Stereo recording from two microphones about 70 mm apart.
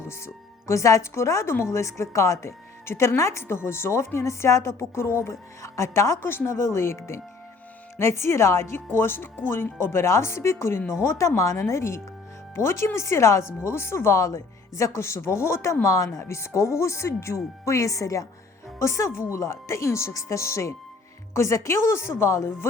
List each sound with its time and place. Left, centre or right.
0.7 s speech: left